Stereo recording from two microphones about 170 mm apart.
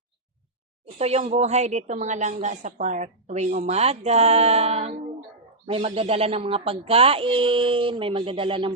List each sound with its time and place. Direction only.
0.9 s a woman's voice: 40° right (ahead or behind)